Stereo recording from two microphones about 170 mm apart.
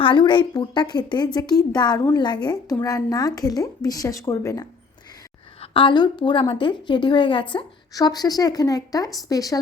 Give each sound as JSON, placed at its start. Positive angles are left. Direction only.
{"t": 0.0, "sound": "a woman's voice", "side_deg": 30}
{"t": 5.7, "sound": "a woman's voice", "side_deg": 30}